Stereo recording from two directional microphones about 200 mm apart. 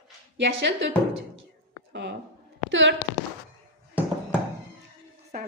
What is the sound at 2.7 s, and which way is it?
Speech, 65° right (ahead or behind).